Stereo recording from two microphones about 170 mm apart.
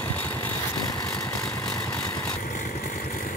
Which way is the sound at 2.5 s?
50° left (ahead or behind).